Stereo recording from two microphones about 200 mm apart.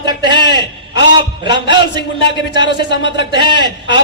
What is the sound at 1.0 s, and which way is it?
Speech, 60° left (ahead or behind).